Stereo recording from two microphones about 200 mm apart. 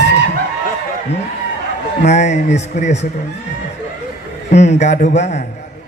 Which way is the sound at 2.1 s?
35° left (ahead or behind).